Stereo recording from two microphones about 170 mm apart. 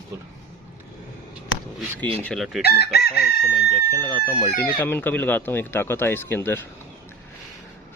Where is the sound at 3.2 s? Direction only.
Centre (ahead or behind).